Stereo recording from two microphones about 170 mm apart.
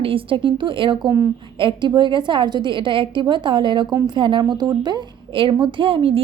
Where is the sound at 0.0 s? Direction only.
30° right (ahead or behind).